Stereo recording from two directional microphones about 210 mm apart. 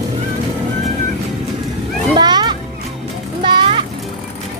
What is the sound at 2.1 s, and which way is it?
Music, 20° right (ahead or behind).